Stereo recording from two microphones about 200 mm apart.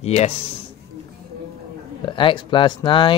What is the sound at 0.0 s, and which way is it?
Speech, 35° left (ahead or behind).